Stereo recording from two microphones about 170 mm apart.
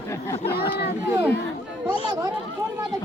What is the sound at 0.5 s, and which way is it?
Speech, 70° left (ahead or behind).